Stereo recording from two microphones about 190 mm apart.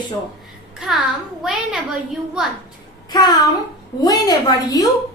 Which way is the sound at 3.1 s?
20° left (ahead or behind).